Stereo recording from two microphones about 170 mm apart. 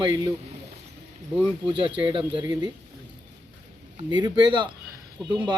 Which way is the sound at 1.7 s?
30° right (ahead or behind).